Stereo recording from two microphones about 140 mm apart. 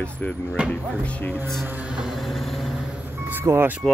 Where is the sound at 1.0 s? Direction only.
10° left (ahead or behind).